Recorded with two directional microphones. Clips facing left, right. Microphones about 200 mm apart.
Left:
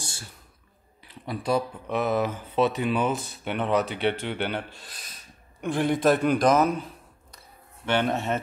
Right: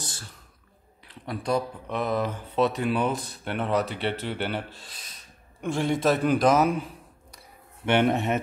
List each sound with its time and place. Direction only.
0.0 s whispering: 10° left (ahead or behind)
1.0 s speech: 5° left (ahead or behind)
7.8 s speech: 20° right (ahead or behind)